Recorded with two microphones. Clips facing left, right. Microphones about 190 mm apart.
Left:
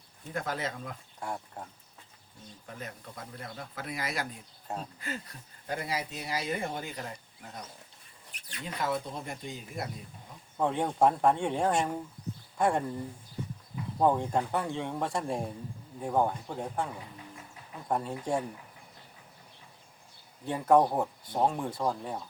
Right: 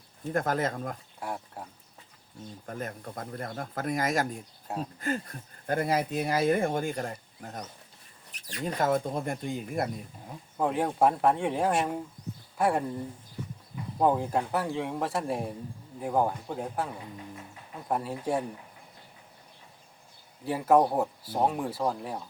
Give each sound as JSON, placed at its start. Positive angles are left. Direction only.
{"t": 0.3, "sound": "speech", "side_deg": -50}
{"t": 1.2, "sound": "speech", "side_deg": -5}
{"t": 2.6, "sound": "speech", "side_deg": -50}
{"t": 10.6, "sound": "speech", "side_deg": -5}
{"t": 14.0, "sound": "speech", "side_deg": -5}
{"t": 20.4, "sound": "speech", "side_deg": -5}